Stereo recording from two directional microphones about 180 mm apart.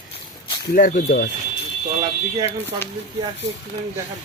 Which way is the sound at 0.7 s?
45° left (ahead or behind).